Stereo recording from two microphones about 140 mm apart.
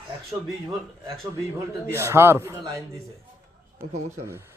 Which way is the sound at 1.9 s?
20° right (ahead or behind).